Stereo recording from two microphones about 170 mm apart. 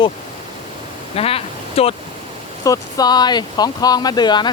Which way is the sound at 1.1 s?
35° left (ahead or behind).